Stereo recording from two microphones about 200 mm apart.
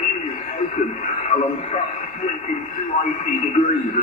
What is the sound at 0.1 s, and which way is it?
Speech, 35° left (ahead or behind).